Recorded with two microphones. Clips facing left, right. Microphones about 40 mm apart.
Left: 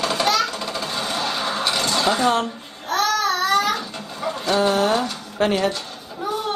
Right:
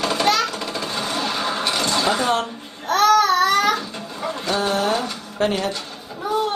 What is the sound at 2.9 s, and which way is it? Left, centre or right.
Child singing, right.